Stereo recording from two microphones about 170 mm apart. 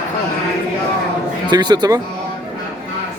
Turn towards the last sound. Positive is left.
turn(degrees=-25)  # may be behind; listen again after turning